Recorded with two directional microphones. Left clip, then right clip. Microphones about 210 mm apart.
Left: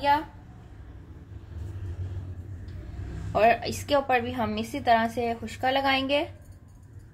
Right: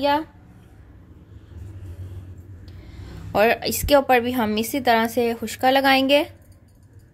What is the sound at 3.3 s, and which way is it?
A woman's voice, 55° right (ahead or behind).